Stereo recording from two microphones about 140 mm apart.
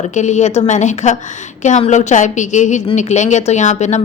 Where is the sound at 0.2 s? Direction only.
55° left (ahead or behind).